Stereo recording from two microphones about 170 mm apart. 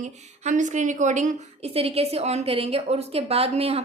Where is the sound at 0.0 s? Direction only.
45° right (ahead or behind).